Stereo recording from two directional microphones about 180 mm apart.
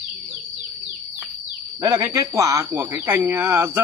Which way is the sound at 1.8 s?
15° right (ahead or behind).